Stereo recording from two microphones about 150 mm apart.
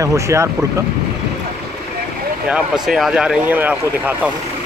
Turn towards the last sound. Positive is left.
turn(degrees=-10)  # may be behind; listen again after turning